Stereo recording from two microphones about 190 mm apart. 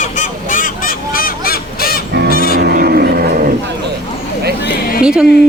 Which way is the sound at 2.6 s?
55° right (ahead or behind).